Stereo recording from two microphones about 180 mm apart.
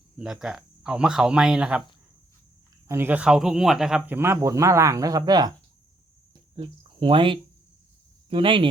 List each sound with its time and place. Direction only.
0.2 s speech: 5° right (ahead or behind)
2.8 s speech: 15° right (ahead or behind)
6.6 s speech: 30° right (ahead or behind)